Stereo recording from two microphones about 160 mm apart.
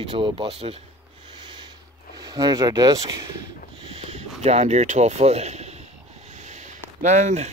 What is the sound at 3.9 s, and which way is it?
Speech, 40° right (ahead or behind).